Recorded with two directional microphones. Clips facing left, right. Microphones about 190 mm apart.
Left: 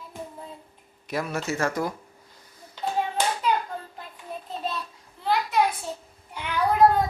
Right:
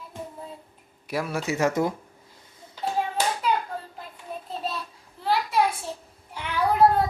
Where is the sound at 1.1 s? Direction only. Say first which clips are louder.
Right 1 dB; 10° right (ahead or behind).